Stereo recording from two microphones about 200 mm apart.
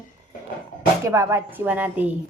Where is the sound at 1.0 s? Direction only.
15° right (ahead or behind).